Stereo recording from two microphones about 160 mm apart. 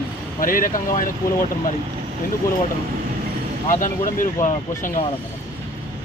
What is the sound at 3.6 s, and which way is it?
Speech, 55° left (ahead or behind).